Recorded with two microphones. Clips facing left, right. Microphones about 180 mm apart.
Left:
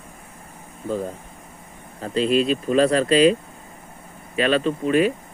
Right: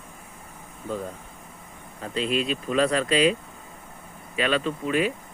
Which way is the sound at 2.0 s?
40° left (ahead or behind).